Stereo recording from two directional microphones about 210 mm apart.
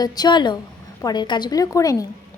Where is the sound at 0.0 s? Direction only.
20° left (ahead or behind).